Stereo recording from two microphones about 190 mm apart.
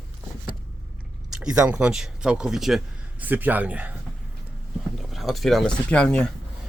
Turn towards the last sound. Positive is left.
turn(degrees=5)  # may be behind; listen again after turning